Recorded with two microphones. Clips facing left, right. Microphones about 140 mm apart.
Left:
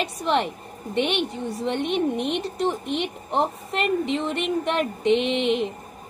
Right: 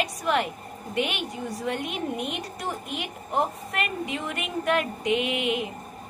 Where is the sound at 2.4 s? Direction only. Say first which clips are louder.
Left 8 dB; 25° left (ahead or behind).